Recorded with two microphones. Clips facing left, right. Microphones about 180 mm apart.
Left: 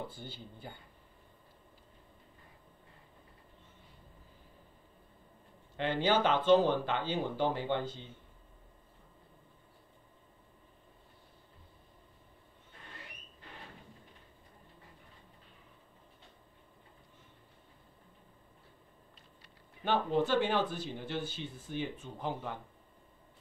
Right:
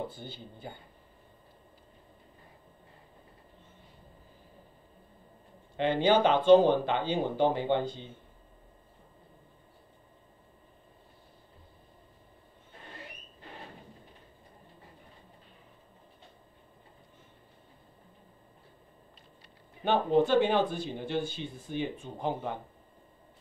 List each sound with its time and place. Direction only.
0.2 s speech: 15° right (ahead or behind)
5.8 s speech: 20° right (ahead or behind)
12.7 s a sound: 30° right (ahead or behind)
19.8 s speech: 25° right (ahead or behind)